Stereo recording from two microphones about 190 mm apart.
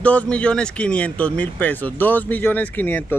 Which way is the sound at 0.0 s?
5° left (ahead or behind).